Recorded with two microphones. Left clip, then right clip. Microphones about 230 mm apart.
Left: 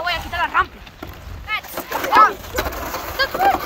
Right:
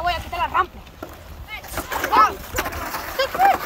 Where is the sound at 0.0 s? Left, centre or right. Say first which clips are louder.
Left 2 dB; right.